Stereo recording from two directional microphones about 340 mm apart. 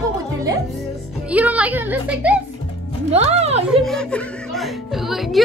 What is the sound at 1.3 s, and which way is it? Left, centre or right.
Speech, centre.